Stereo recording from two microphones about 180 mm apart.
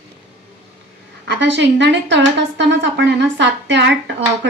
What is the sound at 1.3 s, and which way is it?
A woman's voice, 80° right.